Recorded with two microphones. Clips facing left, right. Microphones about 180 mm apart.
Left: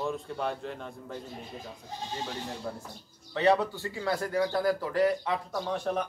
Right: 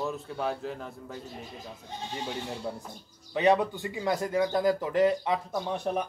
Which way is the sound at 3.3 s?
15° right (ahead or behind).